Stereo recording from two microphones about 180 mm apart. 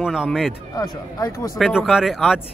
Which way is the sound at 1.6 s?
5° right (ahead or behind).